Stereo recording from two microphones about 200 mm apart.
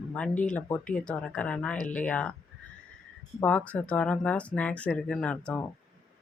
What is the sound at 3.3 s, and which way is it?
Speech, 5° left (ahead or behind).